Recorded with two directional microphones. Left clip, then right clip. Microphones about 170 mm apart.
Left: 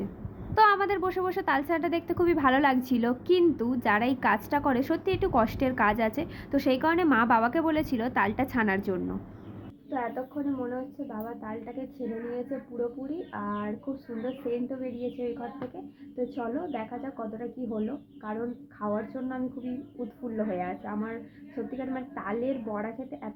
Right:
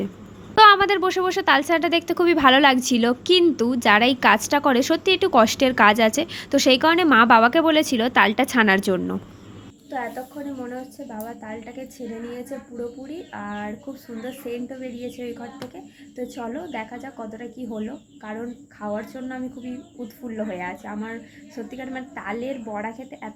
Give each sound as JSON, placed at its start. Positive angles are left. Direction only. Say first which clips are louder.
{"t": 0.5, "sound": "speech", "louder": "right 9 dB", "side_deg": -25}
{"t": 9.9, "sound": "a woman's voice", "louder": "right 3 dB", "side_deg": -5}
{"t": 13.4, "sound": "a woman's voice", "louder": "right 4 dB", "side_deg": -5}